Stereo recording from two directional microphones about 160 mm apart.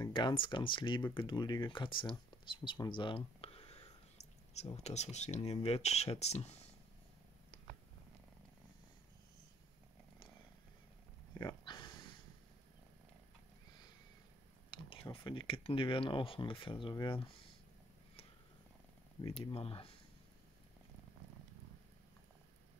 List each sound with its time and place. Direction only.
0.0 s speech: 30° left (ahead or behind)
7.5 s purr: 30° left (ahead or behind)
11.3 s a sound: 25° left (ahead or behind)
14.7 s speech: 30° left (ahead or behind)
19.2 s speech: 35° left (ahead or behind)